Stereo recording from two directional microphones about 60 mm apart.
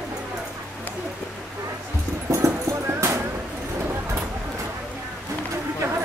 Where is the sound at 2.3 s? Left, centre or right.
Right.